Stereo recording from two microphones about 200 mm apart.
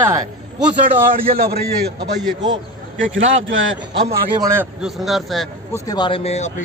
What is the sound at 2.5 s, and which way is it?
A man's voice, 75° right (ahead or behind).